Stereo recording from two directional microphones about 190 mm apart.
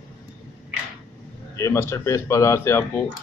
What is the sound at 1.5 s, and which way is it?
Speech, 15° left (ahead or behind).